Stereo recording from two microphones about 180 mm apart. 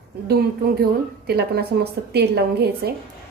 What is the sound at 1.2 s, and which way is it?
A woman's voice, 60° right (ahead or behind).